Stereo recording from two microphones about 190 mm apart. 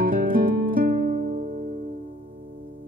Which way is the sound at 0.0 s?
50° right (ahead or behind).